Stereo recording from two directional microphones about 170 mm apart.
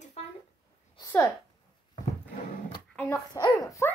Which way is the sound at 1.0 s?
25° left (ahead or behind).